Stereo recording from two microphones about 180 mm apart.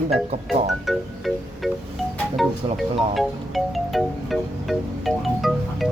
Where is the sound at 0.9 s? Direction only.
Centre (ahead or behind).